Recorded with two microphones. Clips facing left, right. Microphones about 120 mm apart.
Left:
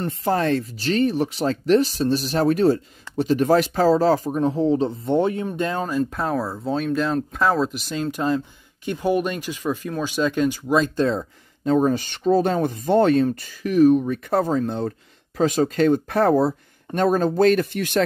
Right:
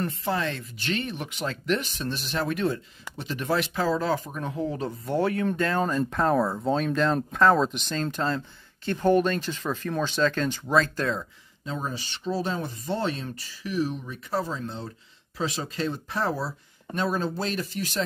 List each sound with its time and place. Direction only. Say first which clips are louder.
0.0 s speech: left 6 dB; 40° left (ahead or behind); by 5.8 s 20° left (ahead or behind)
5.8 s speech: left 1 dB; 5° left (ahead or behind)
11.6 s speech: left 14 dB; 55° left (ahead or behind)